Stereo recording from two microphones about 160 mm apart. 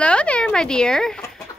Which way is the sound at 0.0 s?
5° left (ahead or behind).